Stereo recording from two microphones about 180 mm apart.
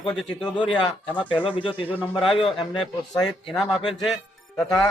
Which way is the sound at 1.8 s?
10° left (ahead or behind).